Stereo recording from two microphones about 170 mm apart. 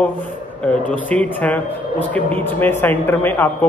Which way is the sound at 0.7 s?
10° left (ahead or behind).